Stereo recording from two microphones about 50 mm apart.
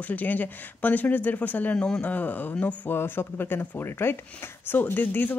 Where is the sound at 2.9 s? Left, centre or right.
Left.